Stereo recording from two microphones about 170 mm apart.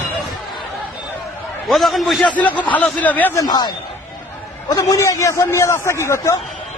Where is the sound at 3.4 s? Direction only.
25° left (ahead or behind).